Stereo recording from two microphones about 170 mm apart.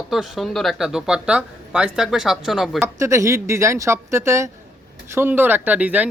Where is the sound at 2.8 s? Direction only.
15° right (ahead or behind).